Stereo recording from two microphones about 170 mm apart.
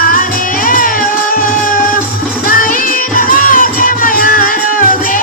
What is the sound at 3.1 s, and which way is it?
Music, 55° left (ahead or behind).